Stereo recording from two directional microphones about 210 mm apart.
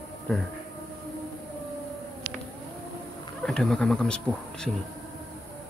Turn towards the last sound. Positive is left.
turn(degrees=5)  # may be behind; listen again after turning